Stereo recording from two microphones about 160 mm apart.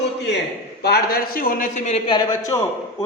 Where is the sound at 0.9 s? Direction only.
70° left (ahead or behind); by 2.0 s 45° left (ahead or behind).